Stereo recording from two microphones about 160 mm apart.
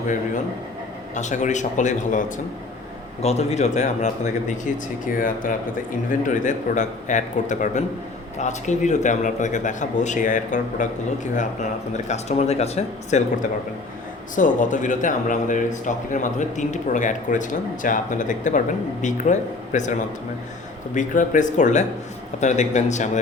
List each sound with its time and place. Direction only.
1.1 s speech: 50° left (ahead or behind)
14.3 s speech: 55° left (ahead or behind)